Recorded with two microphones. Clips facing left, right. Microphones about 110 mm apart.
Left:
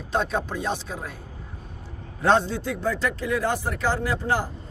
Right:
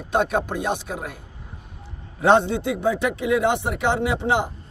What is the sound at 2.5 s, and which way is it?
Speech, 65° right (ahead or behind).